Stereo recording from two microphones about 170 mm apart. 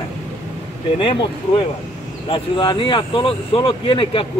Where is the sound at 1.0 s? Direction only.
30° left (ahead or behind).